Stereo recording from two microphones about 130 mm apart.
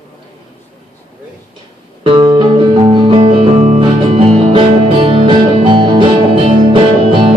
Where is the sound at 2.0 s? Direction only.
35° right (ahead or behind).